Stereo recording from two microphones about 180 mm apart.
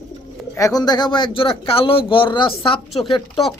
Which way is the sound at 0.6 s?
20° left (ahead or behind).